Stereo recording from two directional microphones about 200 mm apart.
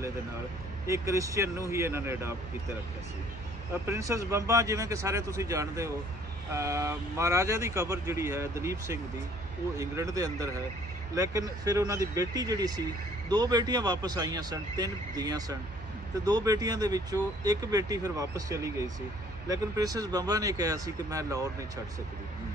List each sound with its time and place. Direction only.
0.8 s speech: 15° right (ahead or behind)
3.8 s speech: 15° right (ahead or behind)